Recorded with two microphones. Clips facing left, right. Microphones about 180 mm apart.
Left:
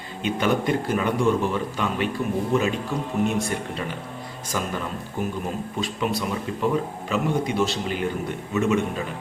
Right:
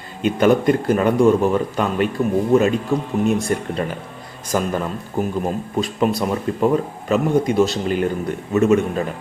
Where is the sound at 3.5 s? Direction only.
45° right (ahead or behind).